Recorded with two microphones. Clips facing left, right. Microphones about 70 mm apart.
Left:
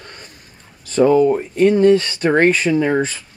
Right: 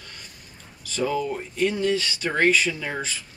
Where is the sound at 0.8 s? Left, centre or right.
Left.